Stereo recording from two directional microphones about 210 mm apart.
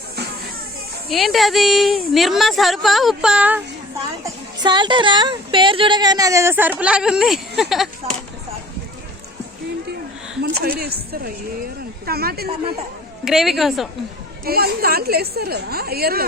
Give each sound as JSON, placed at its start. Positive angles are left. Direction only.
{"t": 1.1, "sound": "a woman's voice", "side_deg": 0}
{"t": 4.2, "sound": "a woman's voice", "side_deg": -20}
{"t": 10.4, "sound": "a woman's voice", "side_deg": -50}
{"t": 13.2, "sound": "a woman's voice", "side_deg": 0}
{"t": 14.4, "sound": "a woman's voice", "side_deg": -45}